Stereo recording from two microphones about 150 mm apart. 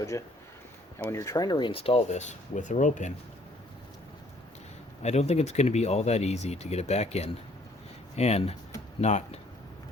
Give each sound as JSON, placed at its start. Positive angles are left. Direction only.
{"t": 0.1, "sound": "speech", "side_deg": 20}
{"t": 5.0, "sound": "speech", "side_deg": 45}